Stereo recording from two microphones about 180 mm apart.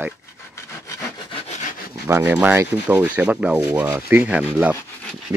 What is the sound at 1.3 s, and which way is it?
Wood, 40° left (ahead or behind).